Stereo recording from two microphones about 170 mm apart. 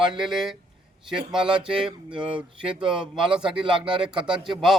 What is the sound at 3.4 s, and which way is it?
Speech, 5° right (ahead or behind).